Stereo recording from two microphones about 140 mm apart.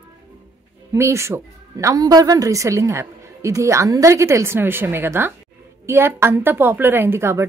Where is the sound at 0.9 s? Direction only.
20° right (ahead or behind).